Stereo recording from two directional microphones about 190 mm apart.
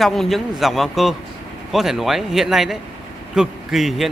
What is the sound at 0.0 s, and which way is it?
Speech, centre (ahead or behind).